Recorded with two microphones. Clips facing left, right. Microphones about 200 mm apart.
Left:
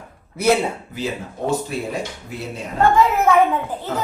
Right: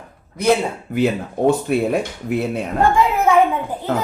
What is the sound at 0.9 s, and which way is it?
A man's voice, 60° right (ahead or behind).